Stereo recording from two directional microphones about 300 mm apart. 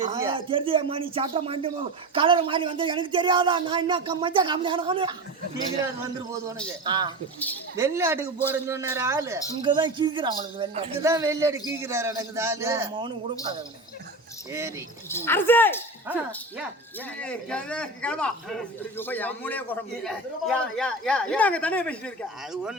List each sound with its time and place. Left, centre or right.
0.0 s speech: centre
6.8 s speech: centre
15.1 s speech: centre
16.0 s a man's voice: centre